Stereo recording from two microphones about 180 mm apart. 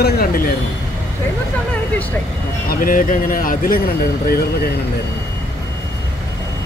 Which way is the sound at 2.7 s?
50° left (ahead or behind).